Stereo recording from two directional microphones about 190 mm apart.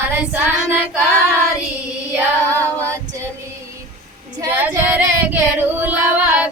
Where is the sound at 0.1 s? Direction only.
10° right (ahead or behind).